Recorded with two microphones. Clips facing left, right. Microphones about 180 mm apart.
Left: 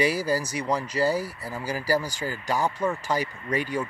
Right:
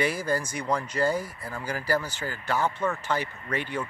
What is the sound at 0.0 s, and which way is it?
Speech, 10° left (ahead or behind).